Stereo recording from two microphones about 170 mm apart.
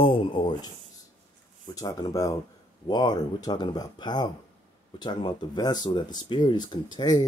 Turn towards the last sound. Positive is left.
turn(degrees=25)  # may be behind; listen again after turning